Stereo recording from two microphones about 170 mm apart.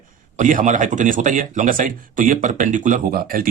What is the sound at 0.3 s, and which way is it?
Speech, 45° right (ahead or behind).